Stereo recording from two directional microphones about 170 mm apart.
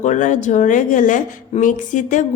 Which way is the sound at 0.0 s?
45° left (ahead or behind).